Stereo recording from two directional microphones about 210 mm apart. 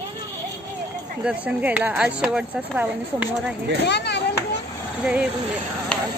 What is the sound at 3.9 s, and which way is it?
Chop, 55° left (ahead or behind).